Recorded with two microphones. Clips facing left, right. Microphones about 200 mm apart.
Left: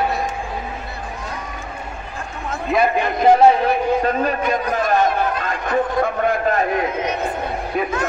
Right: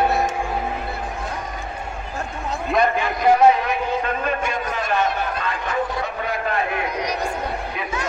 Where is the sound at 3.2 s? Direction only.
35° left (ahead or behind).